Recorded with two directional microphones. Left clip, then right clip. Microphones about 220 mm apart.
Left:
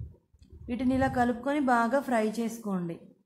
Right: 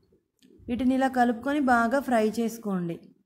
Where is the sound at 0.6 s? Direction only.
15° right (ahead or behind).